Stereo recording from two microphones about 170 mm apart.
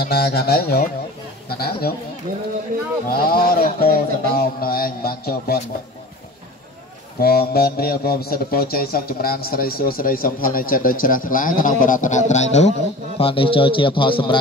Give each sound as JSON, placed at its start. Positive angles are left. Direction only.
{"t": 0.0, "sound": "a man's voice", "side_deg": 65}
{"t": 2.3, "sound": "speech", "side_deg": -55}
{"t": 3.1, "sound": "a man's voice", "side_deg": 60}
{"t": 7.2, "sound": "a man's voice", "side_deg": 65}